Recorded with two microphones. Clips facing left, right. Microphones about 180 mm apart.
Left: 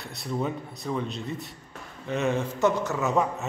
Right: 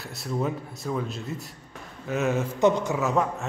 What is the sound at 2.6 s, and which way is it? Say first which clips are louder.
Speech: right 4 dB; 15° right (ahead or behind).